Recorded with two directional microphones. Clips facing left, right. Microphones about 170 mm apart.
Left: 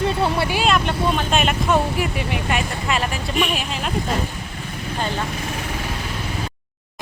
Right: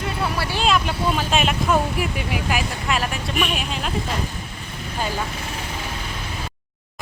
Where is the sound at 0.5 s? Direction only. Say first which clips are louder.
Left 2 dB; centre (ahead or behind).